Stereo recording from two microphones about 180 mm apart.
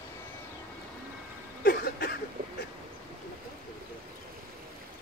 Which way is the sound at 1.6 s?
55° left (ahead or behind).